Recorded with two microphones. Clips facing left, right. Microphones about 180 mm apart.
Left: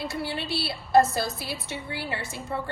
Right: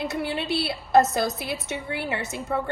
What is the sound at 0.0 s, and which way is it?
A woman's voice, 20° right (ahead or behind).